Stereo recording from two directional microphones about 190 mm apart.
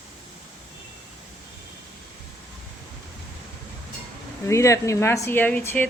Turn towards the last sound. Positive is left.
turn(degrees=10)  # may be behind; listen again after turning